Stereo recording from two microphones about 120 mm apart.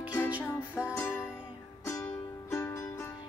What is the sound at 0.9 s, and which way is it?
Music, 20° left (ahead or behind).